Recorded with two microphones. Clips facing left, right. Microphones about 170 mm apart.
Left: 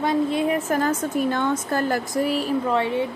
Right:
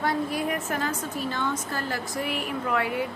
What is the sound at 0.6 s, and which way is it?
Speech, 45° left (ahead or behind).